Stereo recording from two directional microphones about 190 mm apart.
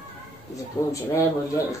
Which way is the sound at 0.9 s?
15° left (ahead or behind).